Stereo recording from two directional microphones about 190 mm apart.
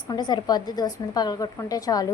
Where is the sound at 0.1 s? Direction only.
20° left (ahead or behind).